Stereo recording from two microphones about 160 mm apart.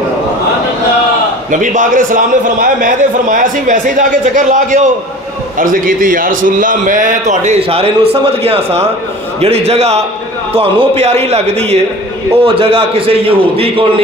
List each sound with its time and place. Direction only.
1.5 s a man's voice: 55° right (ahead or behind); by 13.8 s 35° right (ahead or behind)